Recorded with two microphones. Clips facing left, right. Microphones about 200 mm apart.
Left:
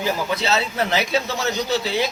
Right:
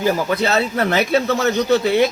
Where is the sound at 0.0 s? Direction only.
50° right (ahead or behind).